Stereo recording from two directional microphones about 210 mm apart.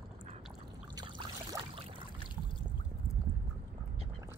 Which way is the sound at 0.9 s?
20° right (ahead or behind).